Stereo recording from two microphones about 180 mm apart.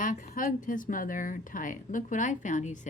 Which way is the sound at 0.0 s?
45° left (ahead or behind).